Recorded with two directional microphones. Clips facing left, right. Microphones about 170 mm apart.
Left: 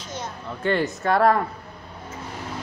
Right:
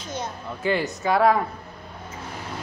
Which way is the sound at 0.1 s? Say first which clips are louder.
Right 2 dB; 5° right (ahead or behind).